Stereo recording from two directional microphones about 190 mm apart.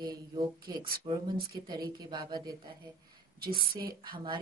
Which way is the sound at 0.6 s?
25° right (ahead or behind).